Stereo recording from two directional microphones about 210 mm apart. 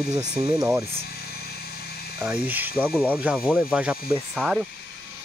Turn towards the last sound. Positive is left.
turn(degrees=0)  # may be behind; listen again after turning